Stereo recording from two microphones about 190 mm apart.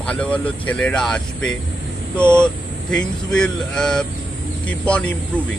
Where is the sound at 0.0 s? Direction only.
5° left (ahead or behind).